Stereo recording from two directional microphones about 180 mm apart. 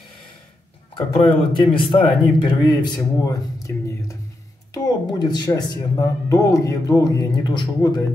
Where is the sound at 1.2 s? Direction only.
30° left (ahead or behind).